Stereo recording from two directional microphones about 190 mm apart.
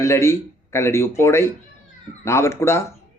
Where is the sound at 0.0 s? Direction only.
15° left (ahead or behind).